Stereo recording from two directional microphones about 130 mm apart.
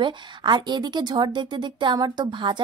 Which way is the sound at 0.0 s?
35° right (ahead or behind).